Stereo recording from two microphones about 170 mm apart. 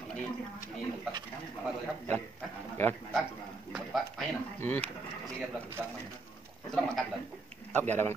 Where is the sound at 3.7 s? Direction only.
Centre (ahead or behind).